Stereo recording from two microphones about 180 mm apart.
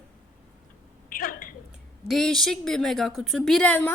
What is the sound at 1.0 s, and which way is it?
Speech, 50° left (ahead or behind).